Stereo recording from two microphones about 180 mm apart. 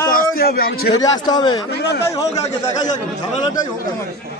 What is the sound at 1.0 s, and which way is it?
Speech, 20° left (ahead or behind).